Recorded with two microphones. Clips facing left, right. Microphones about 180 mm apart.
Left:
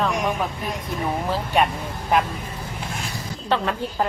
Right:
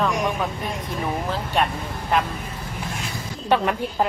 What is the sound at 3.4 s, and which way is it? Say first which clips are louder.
Speech: right 3 dB; 15° right (ahead or behind).